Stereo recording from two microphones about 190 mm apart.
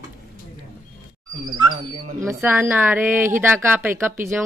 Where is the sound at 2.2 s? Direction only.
10° right (ahead or behind).